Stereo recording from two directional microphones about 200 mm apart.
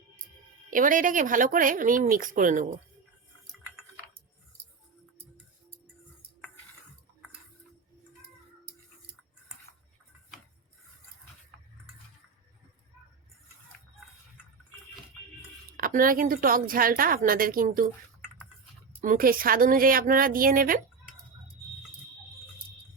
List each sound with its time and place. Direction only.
0.7 s speech: 40° right (ahead or behind)
15.8 s a woman's voice: 45° right (ahead or behind)
19.0 s a woman's voice: 45° right (ahead or behind)